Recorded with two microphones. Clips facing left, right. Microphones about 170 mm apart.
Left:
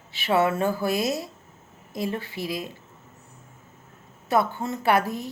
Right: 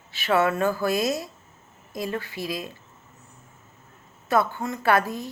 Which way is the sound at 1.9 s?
25° left (ahead or behind).